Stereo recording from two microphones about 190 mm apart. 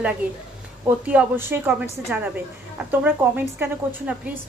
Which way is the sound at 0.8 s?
10° right (ahead or behind).